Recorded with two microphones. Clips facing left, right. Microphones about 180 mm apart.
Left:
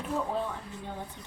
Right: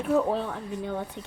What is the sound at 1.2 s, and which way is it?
Speech, 90° right.